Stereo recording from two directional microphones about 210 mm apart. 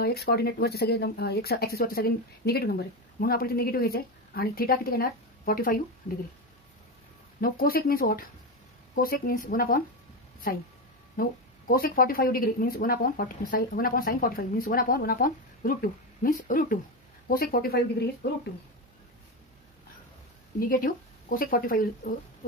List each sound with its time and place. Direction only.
0.0 s speech: 50° left (ahead or behind)
7.3 s speech: 45° left (ahead or behind)
11.1 s speech: 45° left (ahead or behind)
20.5 s speech: 40° left (ahead or behind)